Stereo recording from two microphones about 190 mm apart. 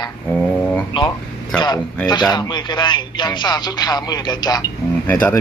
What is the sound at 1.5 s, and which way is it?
Speech, 20° left (ahead or behind).